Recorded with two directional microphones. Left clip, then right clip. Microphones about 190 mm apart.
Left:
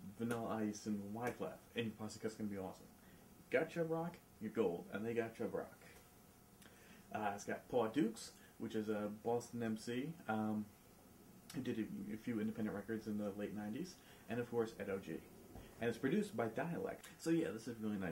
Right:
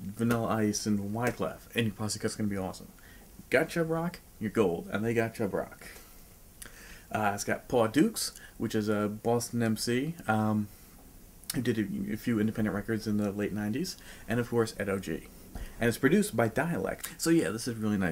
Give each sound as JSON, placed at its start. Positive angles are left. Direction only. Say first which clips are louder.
{"t": 0.2, "sound": "speech", "louder": "right 13 dB", "side_deg": -30}
{"t": 7.1, "sound": "speech", "louder": "right 12 dB", "side_deg": -25}
{"t": 11.5, "sound": "speech", "louder": "right 13 dB", "side_deg": -25}